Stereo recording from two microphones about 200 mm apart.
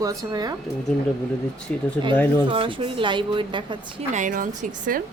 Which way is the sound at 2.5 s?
25° right (ahead or behind).